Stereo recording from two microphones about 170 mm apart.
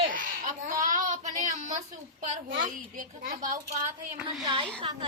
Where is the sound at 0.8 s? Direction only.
45° right (ahead or behind).